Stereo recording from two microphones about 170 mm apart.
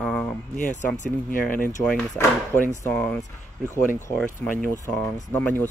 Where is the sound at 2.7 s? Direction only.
10° left (ahead or behind).